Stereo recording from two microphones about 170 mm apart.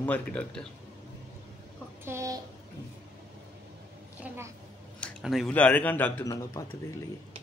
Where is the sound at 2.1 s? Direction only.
20° right (ahead or behind).